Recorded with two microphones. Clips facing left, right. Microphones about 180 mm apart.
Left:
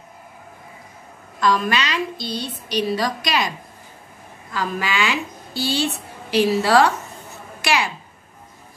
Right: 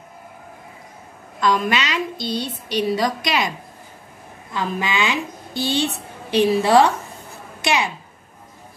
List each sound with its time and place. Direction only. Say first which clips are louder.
1.4 s a woman's voice: even; 20° right (ahead or behind)
4.6 s a woman's voice: right 1 dB; 20° right (ahead or behind)
7.6 s a sound: right 1 dB; 20° right (ahead or behind)